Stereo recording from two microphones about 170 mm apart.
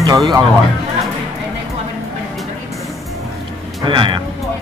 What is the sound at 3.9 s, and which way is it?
Speech, 30° right (ahead or behind).